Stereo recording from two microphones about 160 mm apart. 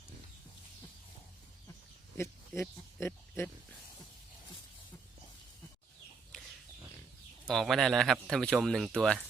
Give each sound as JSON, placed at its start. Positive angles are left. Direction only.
{"t": 2.6, "sound": "speech", "side_deg": 15}
{"t": 7.4, "sound": "a man's voice", "side_deg": 0}